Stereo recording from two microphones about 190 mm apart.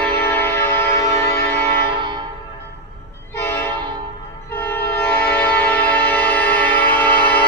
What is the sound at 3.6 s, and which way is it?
Train horn, 25° right (ahead or behind).